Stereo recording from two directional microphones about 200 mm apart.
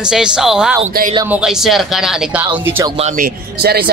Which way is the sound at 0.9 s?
45° right (ahead or behind).